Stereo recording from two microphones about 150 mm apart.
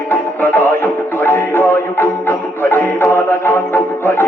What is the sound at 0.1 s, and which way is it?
Music, 15° left (ahead or behind).